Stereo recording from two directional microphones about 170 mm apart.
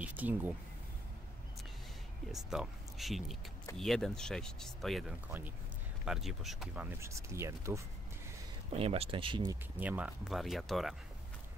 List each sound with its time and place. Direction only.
0.0 s speech: 10° right (ahead or behind)
2.3 s speech: centre (ahead or behind)
6.0 s speech: centre (ahead or behind); by 7.8 s 15° right (ahead or behind)
8.7 s speech: 35° right (ahead or behind)
9.8 s speech: 10° right (ahead or behind)